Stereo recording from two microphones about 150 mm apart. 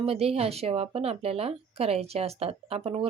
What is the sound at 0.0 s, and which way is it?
A woman's voice, 40° right (ahead or behind).